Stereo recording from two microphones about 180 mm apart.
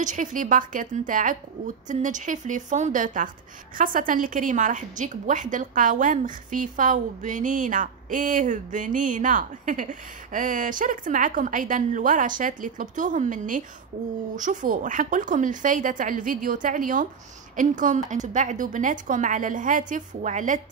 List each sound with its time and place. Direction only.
0.0 s a woman's voice: 45° right (ahead or behind)